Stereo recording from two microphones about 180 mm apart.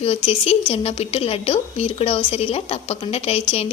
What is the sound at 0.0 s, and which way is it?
A woman's voice, 35° left (ahead or behind).